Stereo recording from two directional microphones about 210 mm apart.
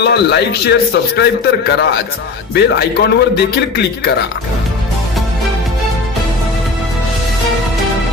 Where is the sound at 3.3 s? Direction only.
50° left (ahead or behind).